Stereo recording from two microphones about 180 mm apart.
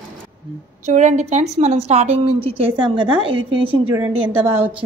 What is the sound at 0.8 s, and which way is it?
A woman's voice, 40° right (ahead or behind).